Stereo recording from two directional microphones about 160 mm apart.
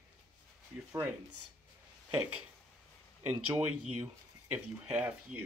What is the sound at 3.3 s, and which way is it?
Speech, 10° right (ahead or behind).